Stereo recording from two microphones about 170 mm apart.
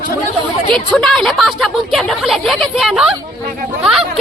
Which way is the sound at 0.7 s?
5° left (ahead or behind).